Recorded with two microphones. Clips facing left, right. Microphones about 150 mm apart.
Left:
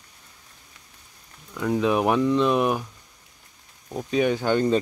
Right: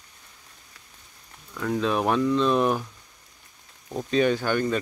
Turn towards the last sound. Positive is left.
turn(degrees=20)  # may be behind; listen again after turning